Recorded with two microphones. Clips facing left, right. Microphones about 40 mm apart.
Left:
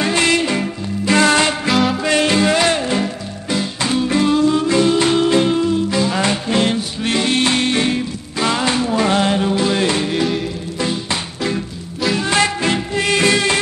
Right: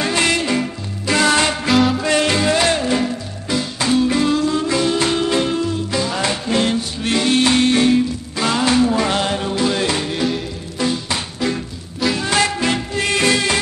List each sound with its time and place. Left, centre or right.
0.0 s music: centre
1.4 s music: centre
4.4 s music: centre
4.6 s music: centre
6.6 s music: left
8.4 s music: centre
12.3 s music: left